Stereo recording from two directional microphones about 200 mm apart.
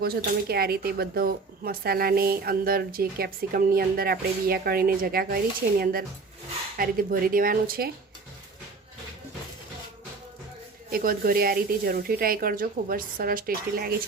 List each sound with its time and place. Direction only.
0.0 s speech: 50° right (ahead or behind)
10.8 s speech: 45° right (ahead or behind)